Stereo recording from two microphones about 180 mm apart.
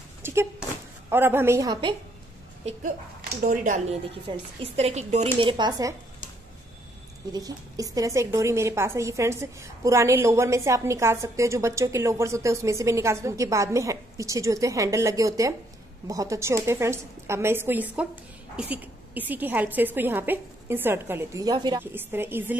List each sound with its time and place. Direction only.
0.2 s a sound: 15° right (ahead or behind)
1.1 s a woman's voice: 10° right (ahead or behind)
3.3 s speech: 50° right (ahead or behind)
4.3 s speech: 35° right (ahead or behind); by 5.9 s 20° right (ahead or behind)
7.3 s a woman's voice: 20° right (ahead or behind)